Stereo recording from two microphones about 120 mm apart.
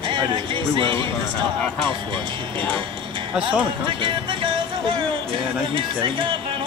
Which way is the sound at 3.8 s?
40° right (ahead or behind).